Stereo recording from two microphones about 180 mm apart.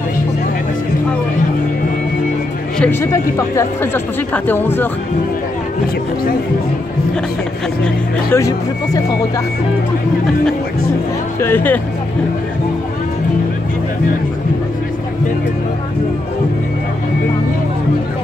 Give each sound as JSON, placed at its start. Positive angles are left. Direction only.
{"t": 2.8, "sound": "speech", "side_deg": 15}
{"t": 7.8, "sound": "speech", "side_deg": 15}
{"t": 11.4, "sound": "speech", "side_deg": 10}